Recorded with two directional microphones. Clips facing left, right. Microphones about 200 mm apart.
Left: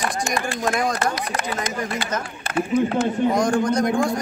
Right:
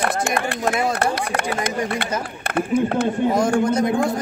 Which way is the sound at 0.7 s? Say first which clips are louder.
Right 1 dB; 5° right (ahead or behind).